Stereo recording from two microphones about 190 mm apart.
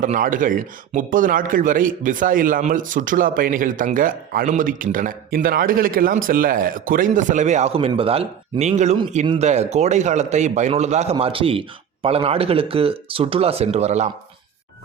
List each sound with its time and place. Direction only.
0.0 s a man's voice: 45° right (ahead or behind)